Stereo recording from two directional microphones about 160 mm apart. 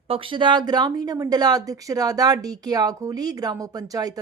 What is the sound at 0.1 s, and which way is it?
A woman's voice, 35° right (ahead or behind).